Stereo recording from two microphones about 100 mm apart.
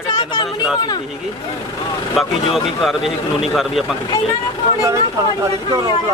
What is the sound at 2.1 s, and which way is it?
Speech, centre (ahead or behind).